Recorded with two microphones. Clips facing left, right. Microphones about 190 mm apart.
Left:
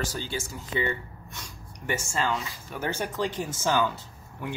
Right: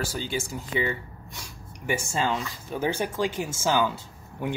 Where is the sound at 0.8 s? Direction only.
5° right (ahead or behind).